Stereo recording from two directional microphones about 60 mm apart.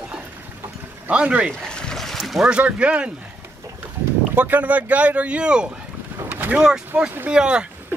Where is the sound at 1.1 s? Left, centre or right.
Right.